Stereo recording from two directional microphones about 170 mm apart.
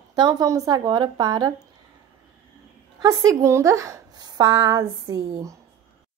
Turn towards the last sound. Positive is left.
turn(degrees=-20)  # may be behind; listen again after turning